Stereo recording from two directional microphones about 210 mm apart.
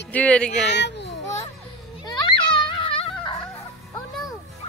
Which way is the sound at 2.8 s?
25° left (ahead or behind).